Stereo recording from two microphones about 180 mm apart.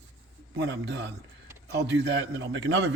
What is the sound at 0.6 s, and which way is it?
Speech, 70° right (ahead or behind).